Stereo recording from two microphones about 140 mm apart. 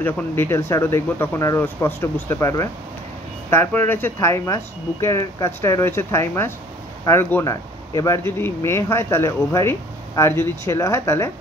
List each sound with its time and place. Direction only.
0.0 s speech: 15° left (ahead or behind)